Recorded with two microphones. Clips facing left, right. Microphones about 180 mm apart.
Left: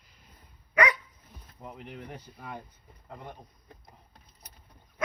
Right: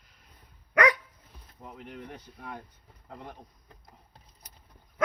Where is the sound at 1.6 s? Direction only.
5° left (ahead or behind).